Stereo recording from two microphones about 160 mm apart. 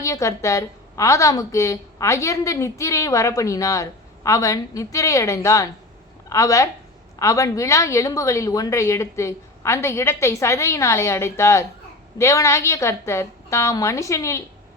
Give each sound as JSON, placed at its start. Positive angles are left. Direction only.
{"t": 0.0, "sound": "a woman's voice", "side_deg": 20}